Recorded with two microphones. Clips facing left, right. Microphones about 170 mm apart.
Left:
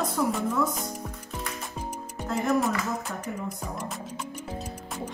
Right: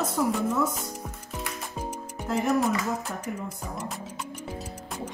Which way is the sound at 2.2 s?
10° right (ahead or behind).